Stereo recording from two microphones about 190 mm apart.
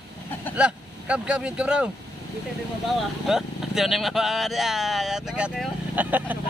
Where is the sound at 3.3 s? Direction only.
Centre (ahead or behind).